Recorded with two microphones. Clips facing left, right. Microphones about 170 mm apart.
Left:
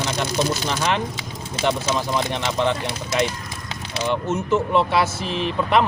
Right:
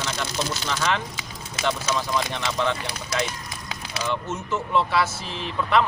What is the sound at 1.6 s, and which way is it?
Speech, 30° left (ahead or behind).